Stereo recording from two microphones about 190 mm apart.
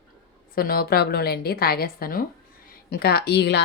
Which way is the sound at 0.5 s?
50° left (ahead or behind).